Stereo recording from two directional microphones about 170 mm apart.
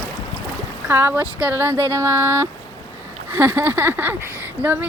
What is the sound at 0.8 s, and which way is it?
Speech, 10° right (ahead or behind).